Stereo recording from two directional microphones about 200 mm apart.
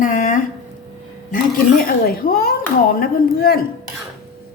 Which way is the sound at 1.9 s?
50° left (ahead or behind).